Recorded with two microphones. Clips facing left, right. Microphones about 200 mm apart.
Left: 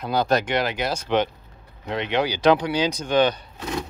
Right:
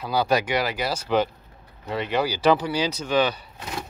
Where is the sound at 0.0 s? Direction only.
5° right (ahead or behind).